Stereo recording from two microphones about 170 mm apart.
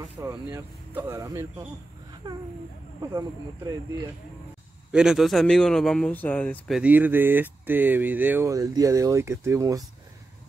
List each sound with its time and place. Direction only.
0.0 s speech: 20° right (ahead or behind)
3.0 s speech: 20° right (ahead or behind)
4.9 s speech: 5° right (ahead or behind)
6.8 s speech: 10° right (ahead or behind)